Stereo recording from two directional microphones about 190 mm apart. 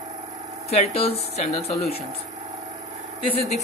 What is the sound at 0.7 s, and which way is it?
Speech, 30° left (ahead or behind).